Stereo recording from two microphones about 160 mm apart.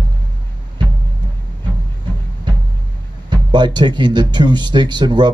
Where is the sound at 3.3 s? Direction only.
30° right (ahead or behind).